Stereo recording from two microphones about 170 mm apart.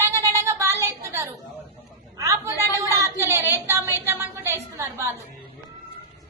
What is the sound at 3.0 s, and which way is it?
Speech, 15° right (ahead or behind).